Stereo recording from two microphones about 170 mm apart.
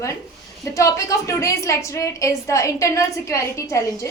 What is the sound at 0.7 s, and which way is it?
A woman's voice, 20° left (ahead or behind).